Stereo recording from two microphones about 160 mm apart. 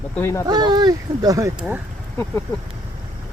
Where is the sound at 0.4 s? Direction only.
25° right (ahead or behind); by 1.8 s 10° right (ahead or behind).